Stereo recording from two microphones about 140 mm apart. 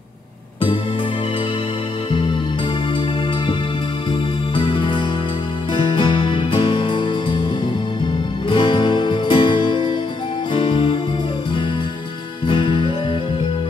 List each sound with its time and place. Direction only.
4.6 s music: 35° left (ahead or behind)
8.5 s music: 35° left (ahead or behind)
12.4 s music: 35° left (ahead or behind)